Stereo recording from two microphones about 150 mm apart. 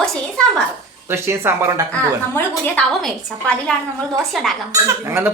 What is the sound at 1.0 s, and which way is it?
Speech, 15° right (ahead or behind).